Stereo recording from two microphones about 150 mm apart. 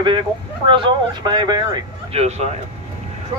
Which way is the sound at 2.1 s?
45° right (ahead or behind).